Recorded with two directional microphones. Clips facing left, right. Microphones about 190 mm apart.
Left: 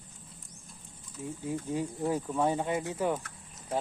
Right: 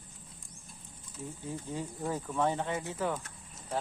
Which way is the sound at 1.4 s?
15° left (ahead or behind).